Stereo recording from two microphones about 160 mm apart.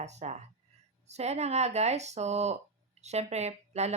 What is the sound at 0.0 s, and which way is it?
Speech, 45° right (ahead or behind).